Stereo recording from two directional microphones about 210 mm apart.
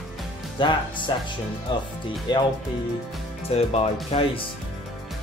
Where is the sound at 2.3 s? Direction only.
20° left (ahead or behind).